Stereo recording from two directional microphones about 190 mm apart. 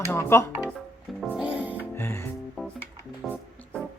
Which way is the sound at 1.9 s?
10° left (ahead or behind).